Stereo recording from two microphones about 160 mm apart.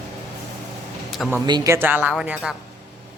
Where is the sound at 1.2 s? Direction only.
10° left (ahead or behind).